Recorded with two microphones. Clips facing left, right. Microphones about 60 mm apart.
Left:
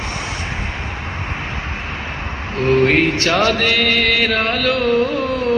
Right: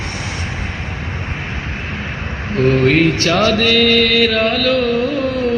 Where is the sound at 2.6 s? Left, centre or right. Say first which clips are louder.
Right 1 dB; left.